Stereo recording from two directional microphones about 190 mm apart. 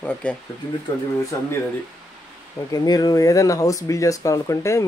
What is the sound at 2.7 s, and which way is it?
Speech, 20° left (ahead or behind).